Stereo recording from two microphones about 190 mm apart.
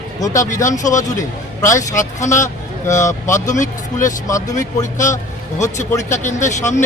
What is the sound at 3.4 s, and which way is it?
Speech, 40° left (ahead or behind).